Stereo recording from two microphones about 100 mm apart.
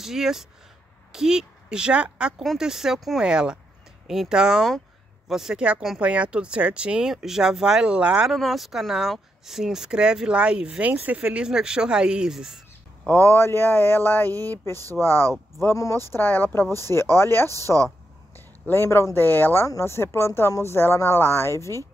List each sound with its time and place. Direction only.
0.0 s speech: 5° right (ahead or behind)
13.0 s speech: 20° left (ahead or behind)
18.7 s speech: 25° left (ahead or behind)